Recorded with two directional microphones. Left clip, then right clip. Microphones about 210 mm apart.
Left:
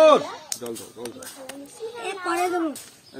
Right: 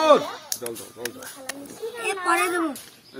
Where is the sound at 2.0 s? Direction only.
50° right (ahead or behind).